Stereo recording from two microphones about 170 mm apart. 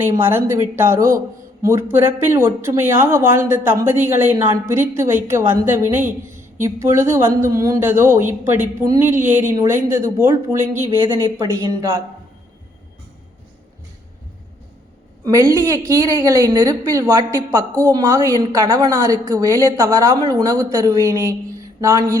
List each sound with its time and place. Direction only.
0.0 s speech: 15° right (ahead or behind)
15.2 s speech: 15° right (ahead or behind)
21.8 s a sound: 20° right (ahead or behind)